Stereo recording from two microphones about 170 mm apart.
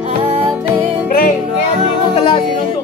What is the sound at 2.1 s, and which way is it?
Music, 30° left (ahead or behind).